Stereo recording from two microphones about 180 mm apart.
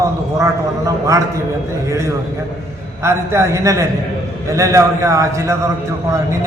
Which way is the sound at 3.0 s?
15° right (ahead or behind).